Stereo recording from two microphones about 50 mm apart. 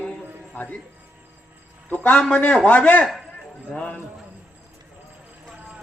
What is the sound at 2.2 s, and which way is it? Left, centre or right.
Speech, left.